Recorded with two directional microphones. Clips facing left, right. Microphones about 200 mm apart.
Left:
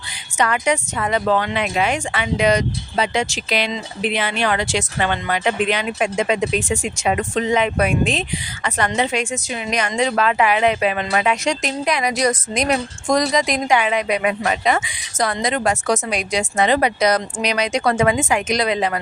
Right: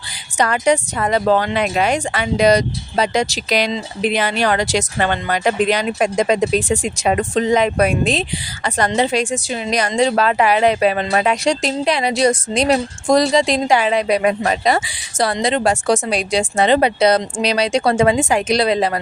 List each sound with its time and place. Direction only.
0.3 s a woman's voice: 35° right (ahead or behind)